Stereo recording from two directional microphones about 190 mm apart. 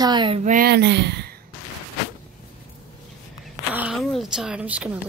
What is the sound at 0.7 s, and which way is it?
Speech, 60° right (ahead or behind).